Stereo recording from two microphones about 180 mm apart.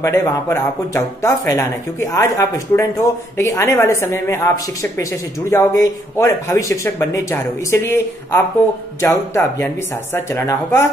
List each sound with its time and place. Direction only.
0.0 s speech: 15° left (ahead or behind)